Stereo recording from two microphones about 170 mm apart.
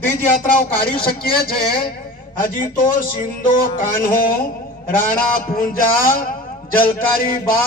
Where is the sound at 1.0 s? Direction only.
60° left (ahead or behind).